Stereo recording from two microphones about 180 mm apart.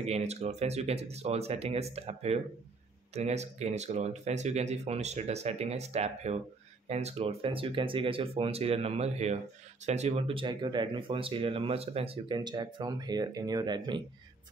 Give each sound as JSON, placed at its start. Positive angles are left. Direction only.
{"t": 0.0, "sound": "speech", "side_deg": -35}